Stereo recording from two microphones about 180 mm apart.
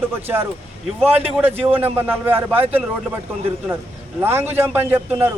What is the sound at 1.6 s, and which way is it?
Speech, 30° right (ahead or behind).